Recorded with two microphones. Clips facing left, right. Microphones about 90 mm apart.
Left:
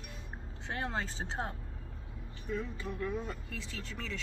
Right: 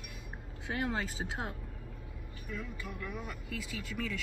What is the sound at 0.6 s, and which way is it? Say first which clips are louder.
Speech: right 2 dB; 30° left (ahead or behind).